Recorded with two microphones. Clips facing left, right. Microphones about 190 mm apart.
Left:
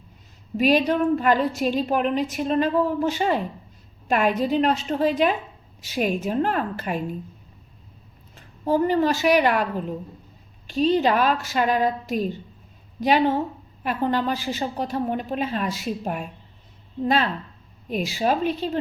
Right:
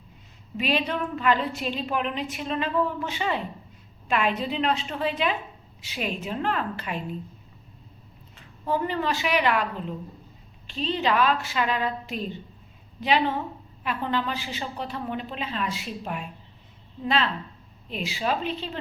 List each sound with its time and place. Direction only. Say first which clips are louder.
0.5 s a woman's voice: left 7 dB; 40° left (ahead or behind)
8.4 s a woman's voice: left 6 dB; 40° left (ahead or behind)